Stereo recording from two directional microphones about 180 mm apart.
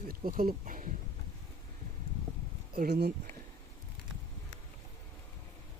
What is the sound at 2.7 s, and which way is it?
Speech, 60° right (ahead or behind).